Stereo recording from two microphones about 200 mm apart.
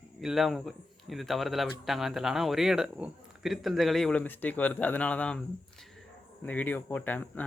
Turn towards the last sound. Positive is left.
turn(degrees=10)  # may be behind; listen again after turning